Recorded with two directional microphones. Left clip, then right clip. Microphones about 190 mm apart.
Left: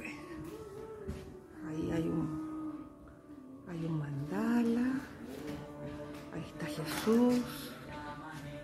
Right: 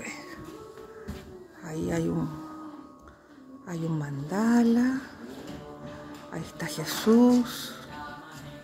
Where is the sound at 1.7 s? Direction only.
30° right (ahead or behind).